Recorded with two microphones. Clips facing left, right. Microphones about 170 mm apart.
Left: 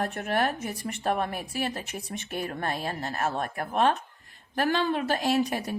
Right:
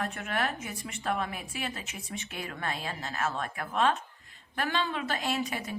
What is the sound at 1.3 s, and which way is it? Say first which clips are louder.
Speech: left 6 dB; 60° left (ahead or behind).